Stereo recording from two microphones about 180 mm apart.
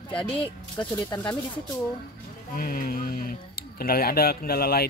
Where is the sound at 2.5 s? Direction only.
55° left (ahead or behind).